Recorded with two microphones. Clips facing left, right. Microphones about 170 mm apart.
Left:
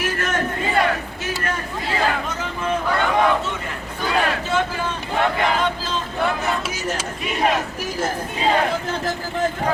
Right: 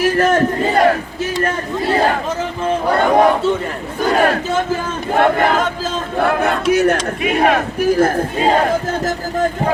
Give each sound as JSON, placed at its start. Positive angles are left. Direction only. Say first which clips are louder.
{"t": 0.0, "sound": "battle cry", "louder": "right 10 dB", "side_deg": -35}
{"t": 2.8, "sound": "crowd", "louder": "right 7 dB", "side_deg": -40}
{"t": 4.0, "sound": "speech", "louder": "right 7 dB", "side_deg": -45}